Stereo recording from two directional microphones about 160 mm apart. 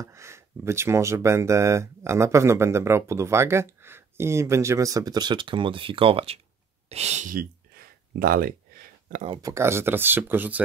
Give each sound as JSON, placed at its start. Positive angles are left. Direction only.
{"t": 0.0, "sound": "speech", "side_deg": -20}
{"t": 6.9, "sound": "a sound", "side_deg": -45}
{"t": 9.4, "sound": "speech", "side_deg": -15}